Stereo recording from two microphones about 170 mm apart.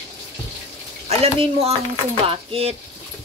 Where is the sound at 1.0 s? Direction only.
35° right (ahead or behind).